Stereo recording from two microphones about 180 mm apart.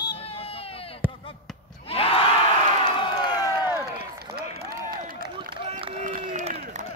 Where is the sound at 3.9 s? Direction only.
60° right (ahead or behind).